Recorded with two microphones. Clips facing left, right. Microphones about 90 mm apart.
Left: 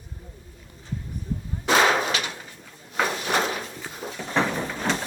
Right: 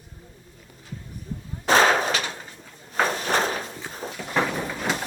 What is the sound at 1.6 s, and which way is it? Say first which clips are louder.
Artillery fire: right 1 dB; 40° right (ahead or behind).